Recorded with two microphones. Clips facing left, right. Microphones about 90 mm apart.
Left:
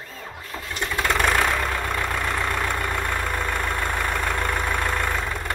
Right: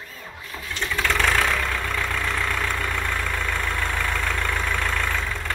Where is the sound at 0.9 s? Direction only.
20° left (ahead or behind).